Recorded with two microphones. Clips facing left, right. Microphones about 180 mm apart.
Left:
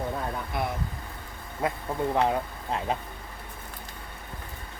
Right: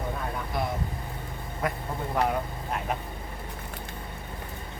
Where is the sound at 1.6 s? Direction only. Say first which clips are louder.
Left 1 dB; 25° left (ahead or behind).